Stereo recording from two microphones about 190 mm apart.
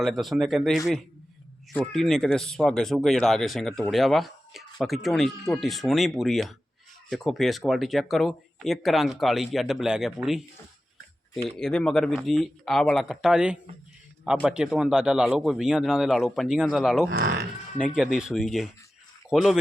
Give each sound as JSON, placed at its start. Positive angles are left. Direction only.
{"t": 0.0, "sound": "speech", "side_deg": 0}
{"t": 11.4, "sound": "speech", "side_deg": 0}
{"t": 17.1, "sound": "speech", "side_deg": -60}
{"t": 17.7, "sound": "speech", "side_deg": -5}